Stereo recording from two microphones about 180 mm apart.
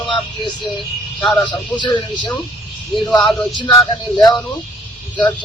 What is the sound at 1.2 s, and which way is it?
Speech, 5° left (ahead or behind).